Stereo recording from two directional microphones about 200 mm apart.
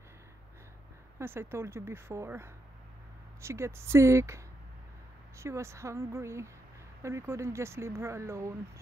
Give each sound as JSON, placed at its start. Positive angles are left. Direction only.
{"t": 1.2, "sound": "speech", "side_deg": -10}
{"t": 5.4, "sound": "speech", "side_deg": -15}